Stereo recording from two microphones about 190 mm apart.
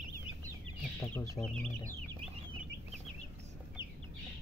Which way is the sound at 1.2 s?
10° left (ahead or behind).